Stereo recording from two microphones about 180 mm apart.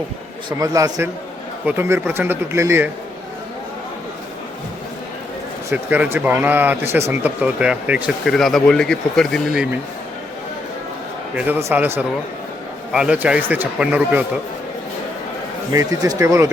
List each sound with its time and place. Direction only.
0.6 s speech: 20° right (ahead or behind)
5.7 s speech: 10° right (ahead or behind)
11.3 s speech: 10° right (ahead or behind)
15.7 s speech: 20° right (ahead or behind)